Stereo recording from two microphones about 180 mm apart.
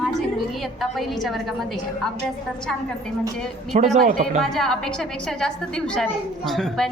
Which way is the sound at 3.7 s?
40° right (ahead or behind).